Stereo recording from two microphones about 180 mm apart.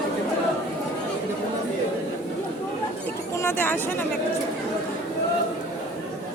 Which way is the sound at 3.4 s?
10° left (ahead or behind).